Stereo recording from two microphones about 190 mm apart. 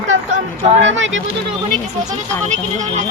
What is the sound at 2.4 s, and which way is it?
Speech, 40° right (ahead or behind).